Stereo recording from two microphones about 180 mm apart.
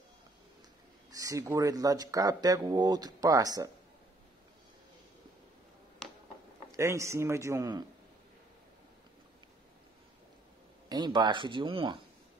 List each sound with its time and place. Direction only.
1.1 s speech: 20° right (ahead or behind)
6.7 s speech: 15° right (ahead or behind)
10.9 s speech: 25° right (ahead or behind)